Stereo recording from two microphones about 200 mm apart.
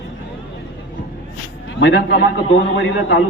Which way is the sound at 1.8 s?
60° left (ahead or behind).